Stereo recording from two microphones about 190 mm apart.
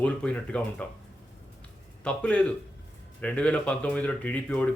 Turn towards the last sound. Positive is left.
turn(degrees=5)  # may be behind; listen again after turning